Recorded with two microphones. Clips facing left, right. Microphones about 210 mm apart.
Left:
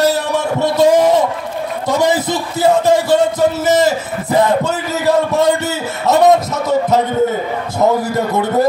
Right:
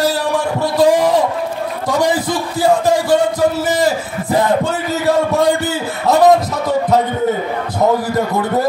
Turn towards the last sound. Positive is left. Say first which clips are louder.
# left 1 dB
turn(degrees=25)  # may be behind; listen again after turning